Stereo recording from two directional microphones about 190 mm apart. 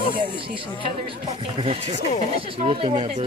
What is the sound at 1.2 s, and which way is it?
Speech, 30° right (ahead or behind).